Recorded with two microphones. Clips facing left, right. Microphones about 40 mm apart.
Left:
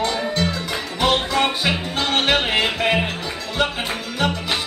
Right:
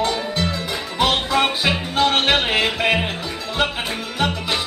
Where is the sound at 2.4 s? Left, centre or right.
Centre.